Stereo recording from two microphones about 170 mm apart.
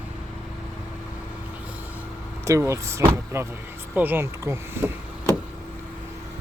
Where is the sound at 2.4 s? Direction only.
15° right (ahead or behind).